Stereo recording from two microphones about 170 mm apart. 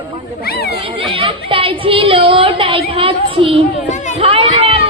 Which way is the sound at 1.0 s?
30° right (ahead or behind).